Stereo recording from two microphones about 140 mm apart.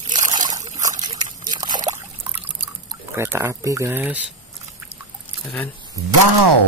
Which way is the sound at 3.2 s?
20° right (ahead or behind).